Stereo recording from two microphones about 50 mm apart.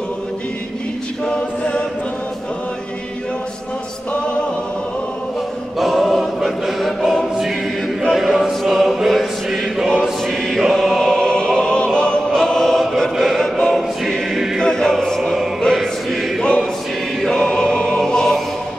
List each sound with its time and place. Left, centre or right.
1.2 s a capella: centre
5.8 s choir: centre
11.1 s choir: centre
13.1 s music: centre
13.4 s choir: centre
14.0 s choir: centre
14.6 s choir: centre